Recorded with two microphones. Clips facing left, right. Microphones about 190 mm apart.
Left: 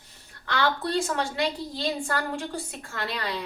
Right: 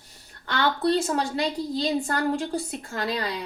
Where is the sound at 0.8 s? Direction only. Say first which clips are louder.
Right 4 dB; 35° right (ahead or behind).